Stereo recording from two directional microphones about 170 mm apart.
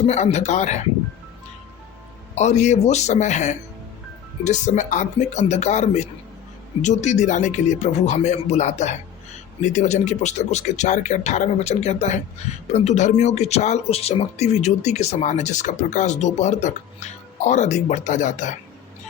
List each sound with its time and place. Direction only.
0.0 s speech: 40° left (ahead or behind)
2.3 s speech: 40° left (ahead or behind)